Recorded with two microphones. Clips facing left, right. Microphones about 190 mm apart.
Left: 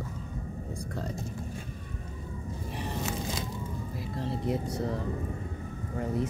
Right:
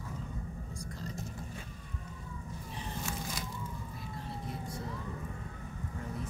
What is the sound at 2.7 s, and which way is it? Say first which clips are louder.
Vehicle: left 6 dB; 70° left (ahead or behind).